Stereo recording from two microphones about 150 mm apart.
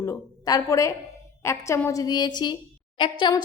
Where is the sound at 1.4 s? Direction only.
20° left (ahead or behind).